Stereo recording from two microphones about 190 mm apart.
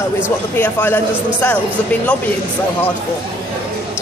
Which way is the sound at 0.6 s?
10° left (ahead or behind).